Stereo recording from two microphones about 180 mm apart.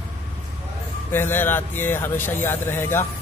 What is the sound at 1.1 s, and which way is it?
Speech, 10° left (ahead or behind).